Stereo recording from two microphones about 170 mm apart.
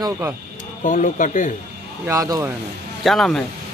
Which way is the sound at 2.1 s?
20° right (ahead or behind).